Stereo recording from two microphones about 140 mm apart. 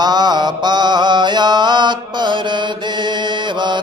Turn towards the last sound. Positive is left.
turn(degrees=-35)  # may be behind; listen again after turning